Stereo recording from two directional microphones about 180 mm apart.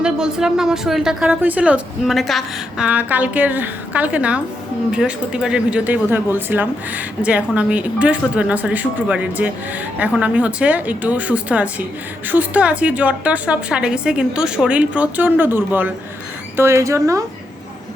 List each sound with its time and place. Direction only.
0.0 s speech: 5° right (ahead or behind)